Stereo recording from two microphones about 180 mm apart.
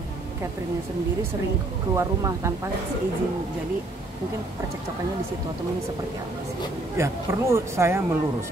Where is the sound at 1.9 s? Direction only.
15° right (ahead or behind).